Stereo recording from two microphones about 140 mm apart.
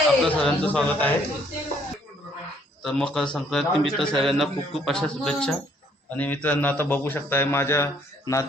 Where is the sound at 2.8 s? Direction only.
Centre (ahead or behind).